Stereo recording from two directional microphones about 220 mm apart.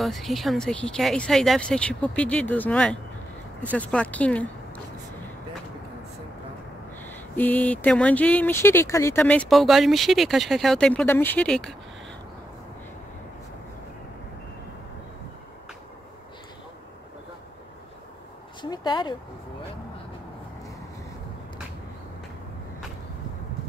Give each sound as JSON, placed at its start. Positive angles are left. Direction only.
{"t": 0.0, "sound": "speech", "side_deg": 0}
{"t": 7.1, "sound": "speech", "side_deg": 10}
{"t": 18.6, "sound": "a sound", "side_deg": 20}